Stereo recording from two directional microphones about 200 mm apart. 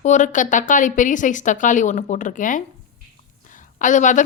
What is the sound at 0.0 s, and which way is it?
A woman's voice, 35° left (ahead or behind).